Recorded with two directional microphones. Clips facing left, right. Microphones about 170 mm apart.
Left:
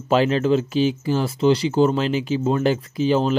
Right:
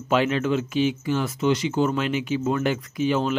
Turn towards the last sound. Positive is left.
turn(degrees=35)  # may be behind; listen again after turning